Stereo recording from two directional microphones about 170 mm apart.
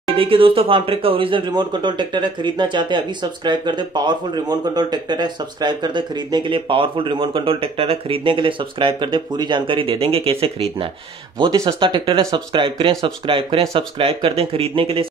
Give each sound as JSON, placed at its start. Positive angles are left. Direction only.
{"t": 0.1, "sound": "speech", "side_deg": -35}